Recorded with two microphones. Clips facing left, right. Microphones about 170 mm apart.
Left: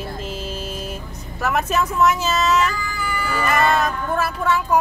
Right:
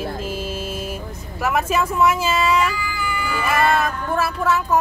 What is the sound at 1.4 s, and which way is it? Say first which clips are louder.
Speech: right 1 dB; 5° right (ahead or behind).